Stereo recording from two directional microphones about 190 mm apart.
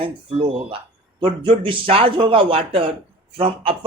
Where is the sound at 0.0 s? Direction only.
30° right (ahead or behind).